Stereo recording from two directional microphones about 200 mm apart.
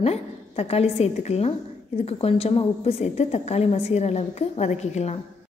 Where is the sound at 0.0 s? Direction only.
30° left (ahead or behind).